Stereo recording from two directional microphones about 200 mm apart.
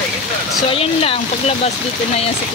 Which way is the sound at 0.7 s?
30° left (ahead or behind).